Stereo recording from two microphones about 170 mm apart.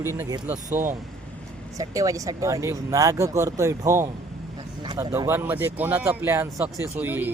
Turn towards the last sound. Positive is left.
turn(degrees=-10)  # may be behind; listen again after turning